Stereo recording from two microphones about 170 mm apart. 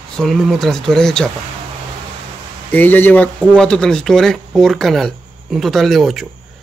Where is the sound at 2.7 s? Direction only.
10° left (ahead or behind).